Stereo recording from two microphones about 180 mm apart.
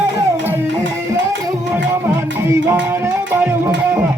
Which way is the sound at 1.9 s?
15° right (ahead or behind).